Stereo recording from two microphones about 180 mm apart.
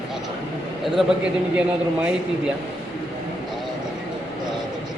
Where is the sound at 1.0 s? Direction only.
Centre (ahead or behind).